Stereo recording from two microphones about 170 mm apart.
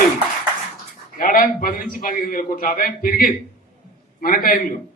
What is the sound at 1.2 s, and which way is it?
A man's voice, 55° left (ahead or behind).